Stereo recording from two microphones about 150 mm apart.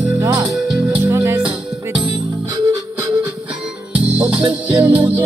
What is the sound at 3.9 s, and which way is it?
Music, 10° right (ahead or behind).